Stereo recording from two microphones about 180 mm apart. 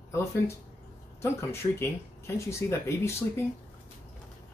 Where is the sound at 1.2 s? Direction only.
15° left (ahead or behind).